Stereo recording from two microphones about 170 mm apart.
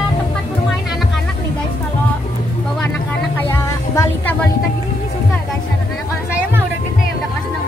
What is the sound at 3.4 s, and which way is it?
Music, 15° left (ahead or behind).